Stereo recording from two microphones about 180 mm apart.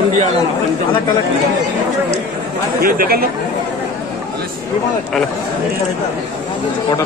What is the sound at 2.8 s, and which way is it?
Speech, 55° right (ahead or behind).